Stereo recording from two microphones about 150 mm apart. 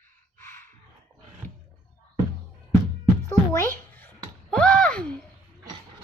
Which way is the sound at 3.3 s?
20° left (ahead or behind).